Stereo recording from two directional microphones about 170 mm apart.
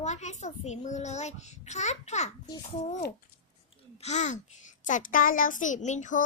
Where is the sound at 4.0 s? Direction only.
45° left (ahead or behind).